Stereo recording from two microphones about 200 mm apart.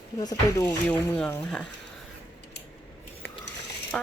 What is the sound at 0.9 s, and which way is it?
Speech, 5° left (ahead or behind).